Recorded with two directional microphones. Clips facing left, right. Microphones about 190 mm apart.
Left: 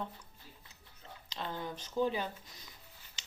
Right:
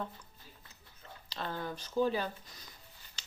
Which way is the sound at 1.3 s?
20° left (ahead or behind).